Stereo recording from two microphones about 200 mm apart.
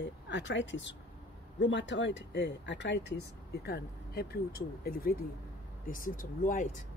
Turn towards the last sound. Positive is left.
turn(degrees=40)  # may be behind; listen again after turning